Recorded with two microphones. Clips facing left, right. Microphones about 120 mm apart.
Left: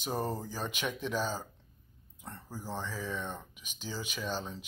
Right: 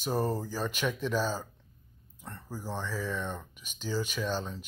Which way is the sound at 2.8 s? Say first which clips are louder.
Right 4 dB; 15° left (ahead or behind).